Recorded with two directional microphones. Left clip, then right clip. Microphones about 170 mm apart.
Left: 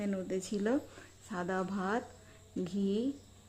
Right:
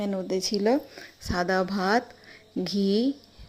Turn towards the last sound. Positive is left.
turn(degrees=-25)  # may be behind; listen again after turning